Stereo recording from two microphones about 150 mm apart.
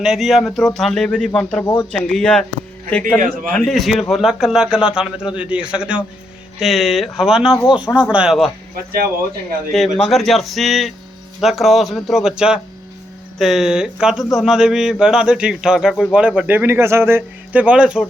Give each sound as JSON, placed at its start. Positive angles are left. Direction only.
{"t": 0.0, "sound": "speech", "side_deg": 0}
{"t": 1.6, "sound": "speech", "side_deg": 25}
{"t": 1.9, "sound": "speech", "side_deg": 5}
{"t": 3.2, "sound": "a man's voice", "side_deg": -65}
{"t": 3.5, "sound": "speech", "side_deg": 5}
{"t": 9.7, "sound": "a man's voice", "side_deg": 0}